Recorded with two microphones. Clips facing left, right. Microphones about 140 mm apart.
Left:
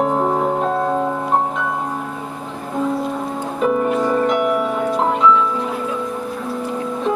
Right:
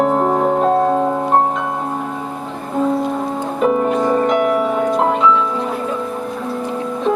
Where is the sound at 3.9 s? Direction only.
25° right (ahead or behind).